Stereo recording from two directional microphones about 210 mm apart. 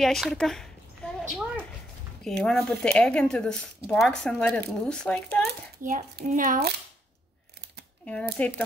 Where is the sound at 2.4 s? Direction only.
Centre (ahead or behind).